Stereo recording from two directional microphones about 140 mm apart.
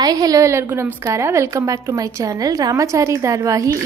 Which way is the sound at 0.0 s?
30° right (ahead or behind).